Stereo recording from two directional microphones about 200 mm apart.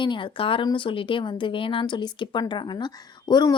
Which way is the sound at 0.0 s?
25° left (ahead or behind).